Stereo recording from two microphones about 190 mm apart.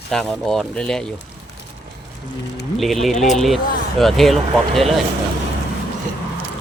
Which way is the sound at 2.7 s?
Centre (ahead or behind).